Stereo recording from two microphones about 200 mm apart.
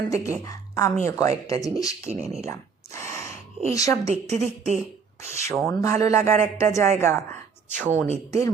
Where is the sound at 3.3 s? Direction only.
35° right (ahead or behind).